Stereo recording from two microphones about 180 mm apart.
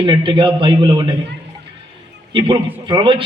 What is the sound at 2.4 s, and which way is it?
Speech, 25° right (ahead or behind).